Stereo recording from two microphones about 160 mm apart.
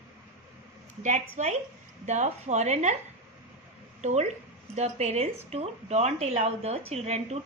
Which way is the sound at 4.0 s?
45° right (ahead or behind).